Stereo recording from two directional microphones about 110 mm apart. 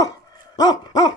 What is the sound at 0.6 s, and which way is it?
Dog, 40° left (ahead or behind).